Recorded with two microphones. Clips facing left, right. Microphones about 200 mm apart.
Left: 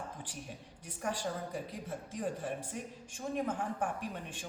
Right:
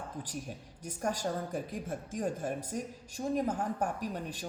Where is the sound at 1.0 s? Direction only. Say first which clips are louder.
Right 3 dB; 45° right (ahead or behind).